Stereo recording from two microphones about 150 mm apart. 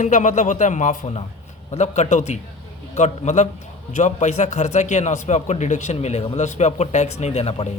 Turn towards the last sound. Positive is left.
turn(degrees=45)  # may be behind; listen again after turning